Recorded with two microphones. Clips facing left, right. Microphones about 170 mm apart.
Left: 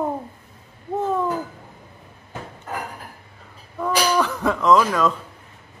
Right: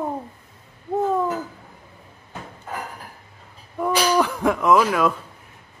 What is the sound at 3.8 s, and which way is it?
Speech, 10° right (ahead or behind).